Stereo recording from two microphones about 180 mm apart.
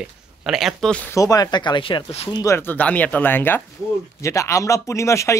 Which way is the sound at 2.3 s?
15° left (ahead or behind).